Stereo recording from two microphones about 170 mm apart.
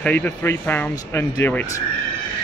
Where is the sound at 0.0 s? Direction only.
10° left (ahead or behind).